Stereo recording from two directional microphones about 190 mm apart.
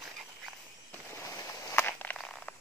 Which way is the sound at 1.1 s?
15° left (ahead or behind).